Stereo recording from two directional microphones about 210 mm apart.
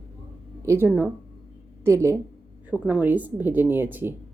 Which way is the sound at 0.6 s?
10° right (ahead or behind).